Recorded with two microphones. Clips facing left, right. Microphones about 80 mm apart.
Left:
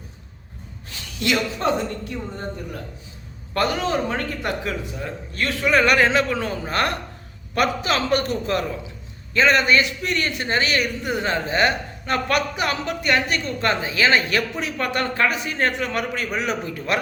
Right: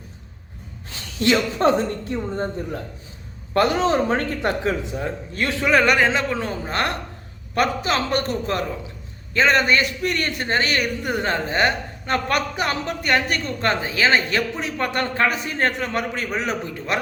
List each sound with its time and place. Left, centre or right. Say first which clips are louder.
1.2 s a man's voice: right 4 dB; right